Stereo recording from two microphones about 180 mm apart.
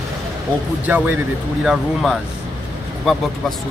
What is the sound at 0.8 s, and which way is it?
Speech, 10° right (ahead or behind).